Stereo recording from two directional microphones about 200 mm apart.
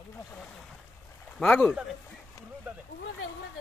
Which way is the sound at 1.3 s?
5° left (ahead or behind).